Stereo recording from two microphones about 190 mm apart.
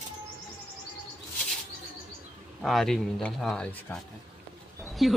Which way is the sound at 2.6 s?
Centre (ahead or behind).